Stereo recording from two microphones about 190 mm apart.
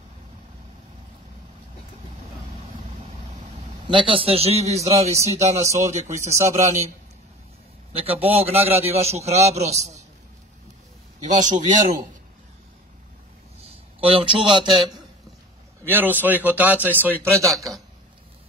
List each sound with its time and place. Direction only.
3.8 s a man's voice: 25° right (ahead or behind)
4.9 s a man's voice: 15° right (ahead or behind)
5.2 s a man's voice: 35° right (ahead or behind)
5.7 s a man's voice: 15° right (ahead or behind)
7.9 s a man's voice: 30° right (ahead or behind)
11.2 s a man's voice: 40° right (ahead or behind)
13.6 s a sound: 30° right (ahead or behind)
15.9 s a man's voice: 10° right (ahead or behind)